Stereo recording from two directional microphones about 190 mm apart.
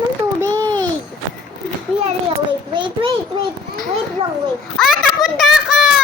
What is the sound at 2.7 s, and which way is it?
Child singing, 25° right (ahead or behind).